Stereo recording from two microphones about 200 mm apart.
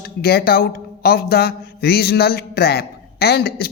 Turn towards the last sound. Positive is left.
turn(degrees=55)  # may be behind; listen again after turning